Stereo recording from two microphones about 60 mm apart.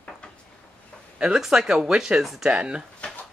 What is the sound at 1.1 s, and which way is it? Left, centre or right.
Speech, centre.